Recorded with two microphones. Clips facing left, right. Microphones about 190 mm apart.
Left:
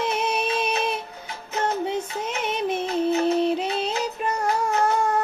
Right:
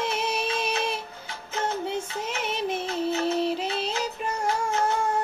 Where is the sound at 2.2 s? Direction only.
55° left (ahead or behind).